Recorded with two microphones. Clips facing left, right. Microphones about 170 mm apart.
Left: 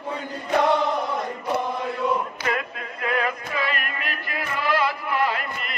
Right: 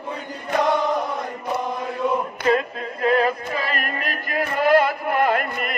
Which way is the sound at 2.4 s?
35° right (ahead or behind).